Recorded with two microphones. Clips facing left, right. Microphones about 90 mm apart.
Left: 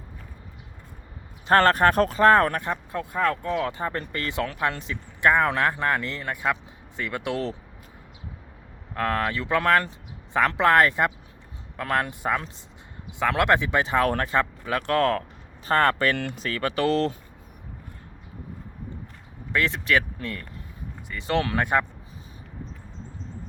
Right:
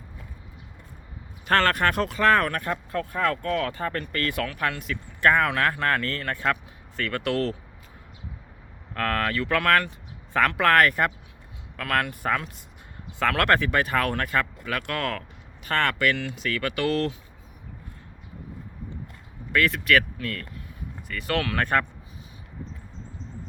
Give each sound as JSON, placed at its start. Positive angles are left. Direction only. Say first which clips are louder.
{"t": 1.5, "sound": "speech", "louder": "left 4 dB", "side_deg": 30}
{"t": 2.6, "sound": "speech", "louder": "right 1 dB", "side_deg": 20}
{"t": 9.0, "sound": "speech", "louder": "even", "side_deg": 20}
{"t": 16.1, "sound": "speech", "louder": "left 2 dB", "side_deg": 50}
{"t": 16.4, "sound": "speech", "louder": "left 1 dB", "side_deg": 30}
{"t": 19.5, "sound": "speech", "louder": "right 2 dB", "side_deg": 20}